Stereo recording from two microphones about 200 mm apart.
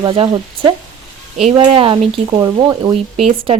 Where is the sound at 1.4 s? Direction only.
30° right (ahead or behind).